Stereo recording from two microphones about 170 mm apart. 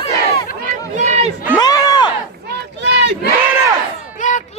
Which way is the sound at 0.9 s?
40° right (ahead or behind).